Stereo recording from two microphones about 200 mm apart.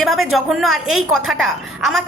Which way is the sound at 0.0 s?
Centre (ahead or behind).